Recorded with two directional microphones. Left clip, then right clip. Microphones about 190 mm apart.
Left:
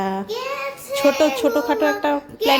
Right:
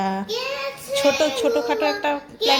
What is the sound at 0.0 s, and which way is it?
Child singing, 20° left (ahead or behind).